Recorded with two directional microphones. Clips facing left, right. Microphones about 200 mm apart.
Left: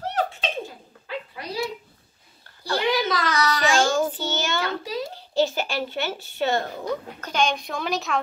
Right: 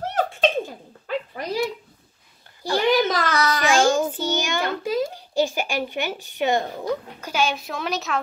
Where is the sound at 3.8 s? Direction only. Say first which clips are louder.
Right 3 dB; 15° right (ahead or behind).